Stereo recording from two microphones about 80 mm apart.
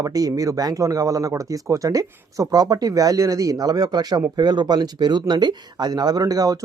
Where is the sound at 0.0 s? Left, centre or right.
Right.